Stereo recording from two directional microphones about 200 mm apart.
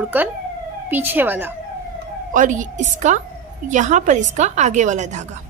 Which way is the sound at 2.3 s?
40° right (ahead or behind).